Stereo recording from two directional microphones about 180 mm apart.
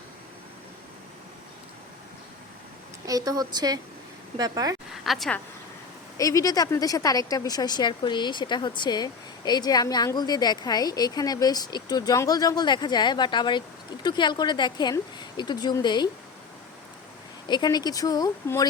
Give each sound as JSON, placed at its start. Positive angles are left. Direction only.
{"t": 3.1, "sound": "a woman's voice", "side_deg": -20}
{"t": 5.0, "sound": "speech", "side_deg": 0}
{"t": 6.1, "sound": "speech", "side_deg": 20}
{"t": 17.5, "sound": "speech", "side_deg": 25}